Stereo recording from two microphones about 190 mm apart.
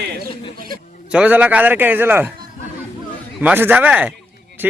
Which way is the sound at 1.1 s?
5° right (ahead or behind).